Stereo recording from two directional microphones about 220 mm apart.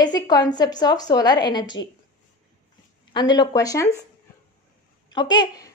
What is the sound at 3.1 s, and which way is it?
Speech, 20° left (ahead or behind).